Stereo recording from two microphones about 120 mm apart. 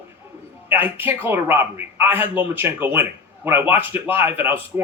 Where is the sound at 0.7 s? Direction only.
15° right (ahead or behind).